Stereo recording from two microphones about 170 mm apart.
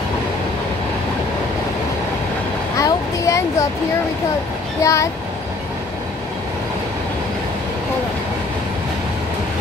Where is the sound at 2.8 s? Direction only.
15° left (ahead or behind).